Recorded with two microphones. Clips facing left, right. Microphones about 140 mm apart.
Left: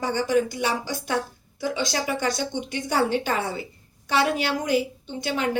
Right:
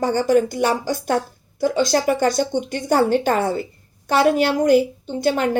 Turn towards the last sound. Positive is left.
turn(degrees=-45)  # may be behind; listen again after turning